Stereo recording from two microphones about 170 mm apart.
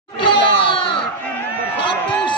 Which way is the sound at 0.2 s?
30° left (ahead or behind).